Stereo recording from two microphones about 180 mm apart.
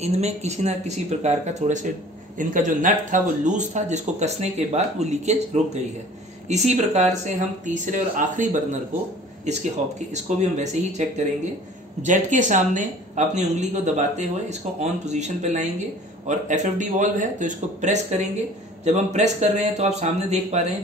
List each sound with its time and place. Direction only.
0.0 s a man's voice: 35° right (ahead or behind)